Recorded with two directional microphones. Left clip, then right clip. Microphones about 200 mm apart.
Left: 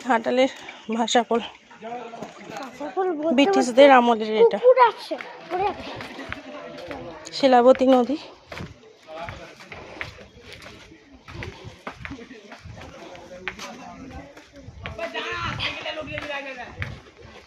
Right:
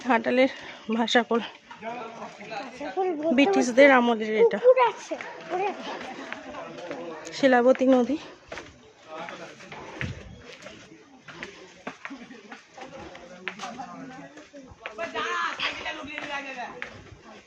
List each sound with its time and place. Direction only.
0.0 s speech: 5° right (ahead or behind)
3.0 s speech: 35° left (ahead or behind)
3.3 s speech: centre (ahead or behind)
4.7 s speech: 40° left (ahead or behind)
6.3 s run: 45° left (ahead or behind)
7.3 s a woman's voice: 5° right (ahead or behind)
7.6 s speech: 5° left (ahead or behind)
14.9 s music: 15° right (ahead or behind)
16.8 s a sound: 45° left (ahead or behind)